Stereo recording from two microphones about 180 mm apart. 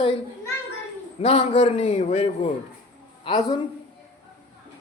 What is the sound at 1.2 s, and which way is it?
A man's voice, 30° left (ahead or behind).